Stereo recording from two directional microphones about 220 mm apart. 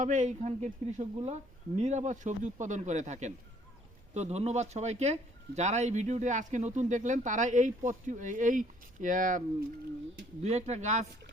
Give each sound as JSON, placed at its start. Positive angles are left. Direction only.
{"t": 0.0, "sound": "speech", "side_deg": -35}
{"t": 10.4, "sound": "speech", "side_deg": -30}